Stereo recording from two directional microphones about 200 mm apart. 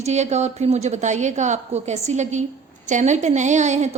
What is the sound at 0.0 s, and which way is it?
A woman's voice, 35° right (ahead or behind).